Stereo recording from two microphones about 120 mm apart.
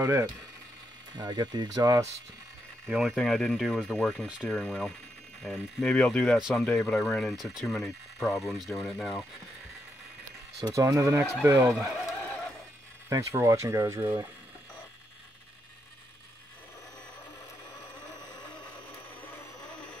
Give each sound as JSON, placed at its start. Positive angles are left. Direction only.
{"t": 0.0, "sound": "speech", "side_deg": -25}
{"t": 1.1, "sound": "speech", "side_deg": -35}
{"t": 2.9, "sound": "speech", "side_deg": -5}
{"t": 10.6, "sound": "speech", "side_deg": -30}
{"t": 13.1, "sound": "speech", "side_deg": -25}